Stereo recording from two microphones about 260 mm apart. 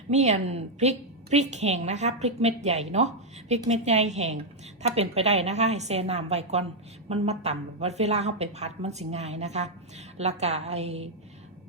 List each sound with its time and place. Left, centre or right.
0.1 s a woman's voice: right